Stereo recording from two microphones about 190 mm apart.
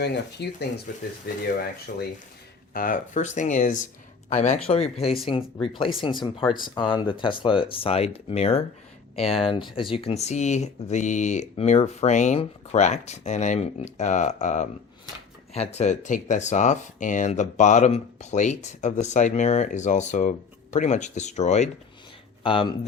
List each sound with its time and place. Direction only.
0.0 s speech: 60° left (ahead or behind)
0.9 s speech: 50° left (ahead or behind)
2.7 s speech: 45° left (ahead or behind); by 22.9 s 25° left (ahead or behind)